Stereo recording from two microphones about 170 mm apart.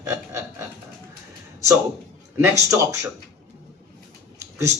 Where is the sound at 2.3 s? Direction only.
15° right (ahead or behind).